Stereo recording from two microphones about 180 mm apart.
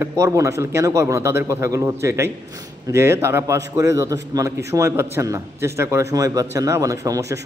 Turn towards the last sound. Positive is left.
turn(degrees=-15)  # may be behind; listen again after turning